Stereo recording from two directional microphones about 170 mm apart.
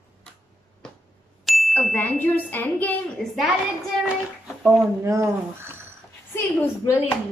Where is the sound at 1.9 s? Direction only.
10° left (ahead or behind).